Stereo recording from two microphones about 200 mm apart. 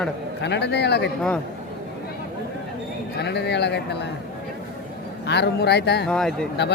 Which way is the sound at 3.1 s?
55° left (ahead or behind).